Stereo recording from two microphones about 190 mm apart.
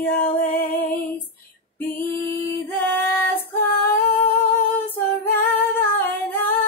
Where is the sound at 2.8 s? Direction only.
10° left (ahead or behind).